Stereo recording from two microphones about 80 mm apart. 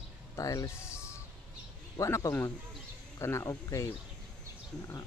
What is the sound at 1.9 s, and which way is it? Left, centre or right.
Speech, left.